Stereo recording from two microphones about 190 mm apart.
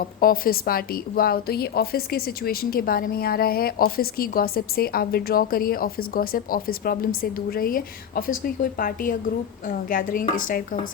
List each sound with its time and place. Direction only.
0.2 s a woman's voice: 50° left (ahead or behind)